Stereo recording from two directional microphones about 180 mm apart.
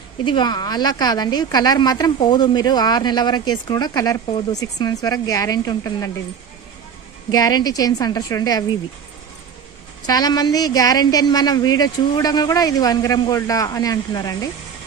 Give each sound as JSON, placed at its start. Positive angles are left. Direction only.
{"t": 0.2, "sound": "speech", "side_deg": 25}
{"t": 7.2, "sound": "speech", "side_deg": 20}
{"t": 10.0, "sound": "speech", "side_deg": 20}